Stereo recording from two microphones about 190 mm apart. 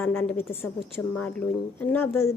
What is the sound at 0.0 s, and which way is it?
A woman's voice, 10° left (ahead or behind).